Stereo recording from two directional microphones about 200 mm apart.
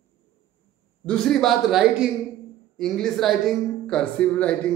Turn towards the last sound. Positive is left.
turn(degrees=5)  # may be behind; listen again after turning